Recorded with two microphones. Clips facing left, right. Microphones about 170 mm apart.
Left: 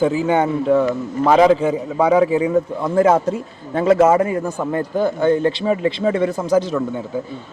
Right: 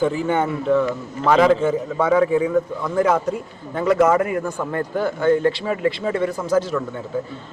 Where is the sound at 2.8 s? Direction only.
25° left (ahead or behind).